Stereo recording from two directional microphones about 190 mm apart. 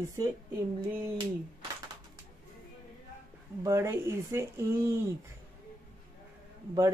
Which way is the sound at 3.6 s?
15° right (ahead or behind).